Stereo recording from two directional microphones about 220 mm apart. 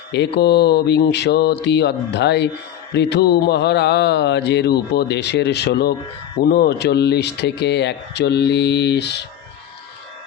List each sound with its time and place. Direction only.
0.1 s mantra: 50° left (ahead or behind)